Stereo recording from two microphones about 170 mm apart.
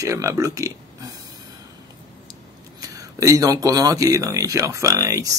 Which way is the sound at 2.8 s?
20° right (ahead or behind).